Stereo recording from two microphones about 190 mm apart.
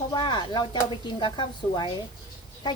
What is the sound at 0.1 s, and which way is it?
A woman's voice, 25° left (ahead or behind).